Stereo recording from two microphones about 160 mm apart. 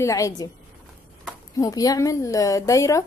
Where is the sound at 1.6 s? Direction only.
20° left (ahead or behind).